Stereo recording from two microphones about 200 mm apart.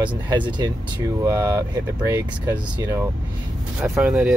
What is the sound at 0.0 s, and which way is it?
Speech, 20° right (ahead or behind).